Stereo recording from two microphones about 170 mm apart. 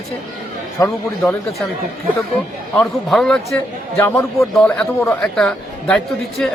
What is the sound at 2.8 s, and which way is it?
Speech, 5° left (ahead or behind).